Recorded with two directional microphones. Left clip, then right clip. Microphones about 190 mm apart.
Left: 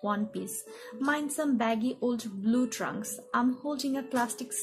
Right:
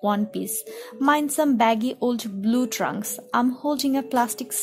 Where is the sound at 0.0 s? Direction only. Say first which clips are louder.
Right 8 dB; 50° right (ahead or behind).